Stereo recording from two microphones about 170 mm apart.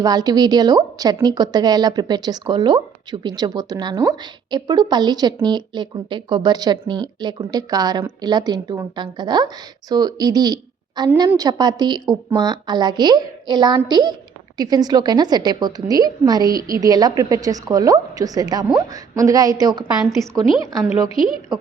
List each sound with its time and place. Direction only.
0.0 s a woman's voice: 20° right (ahead or behind)
16.6 s a woman's voice: 60° right (ahead or behind)
16.8 s a woman's voice: 20° right (ahead or behind)